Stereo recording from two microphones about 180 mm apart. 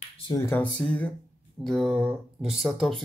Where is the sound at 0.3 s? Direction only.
15° left (ahead or behind).